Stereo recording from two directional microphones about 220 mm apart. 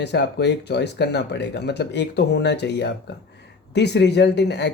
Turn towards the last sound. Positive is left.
turn(degrees=50)  # may be behind; listen again after turning